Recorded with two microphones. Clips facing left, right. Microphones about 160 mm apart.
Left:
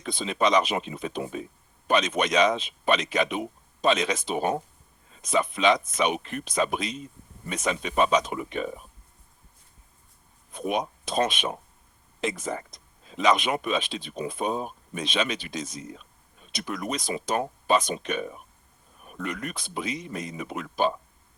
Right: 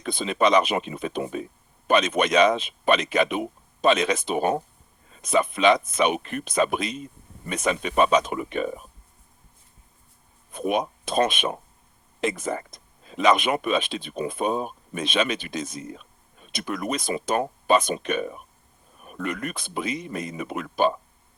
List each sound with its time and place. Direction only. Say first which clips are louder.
0.0 s speech: right 3 dB; 55° right (ahead or behind)
10.5 s speech: right 3 dB; 55° right (ahead or behind)